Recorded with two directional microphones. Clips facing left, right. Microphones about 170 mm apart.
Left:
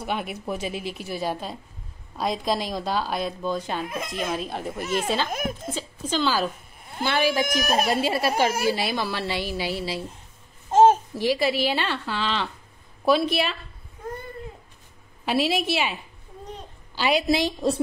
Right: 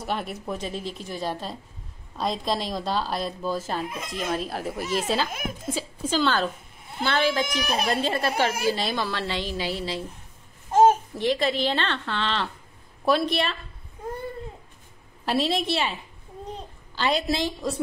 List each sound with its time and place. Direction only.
0.0 s speech: 5° left (ahead or behind)
5.7 s a sound: 5° right (ahead or behind)
7.1 s a woman's voice: 10° left (ahead or behind)
7.4 s speech: 45° left (ahead or behind)
7.8 s a woman's voice: 5° left (ahead or behind)
10.7 s babbling: 25° left (ahead or behind)
11.1 s a woman's voice: 5° left (ahead or behind)
15.2 s a woman's voice: 5° left (ahead or behind)